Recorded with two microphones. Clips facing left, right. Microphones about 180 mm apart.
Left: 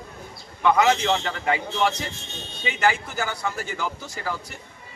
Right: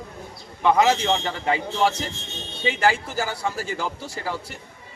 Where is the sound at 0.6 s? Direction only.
30° right (ahead or behind).